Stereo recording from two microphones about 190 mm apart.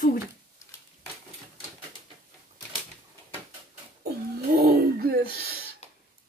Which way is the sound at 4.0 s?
55° right (ahead or behind).